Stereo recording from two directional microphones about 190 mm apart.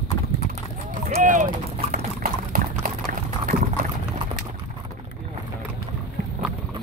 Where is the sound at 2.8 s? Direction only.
45° right (ahead or behind).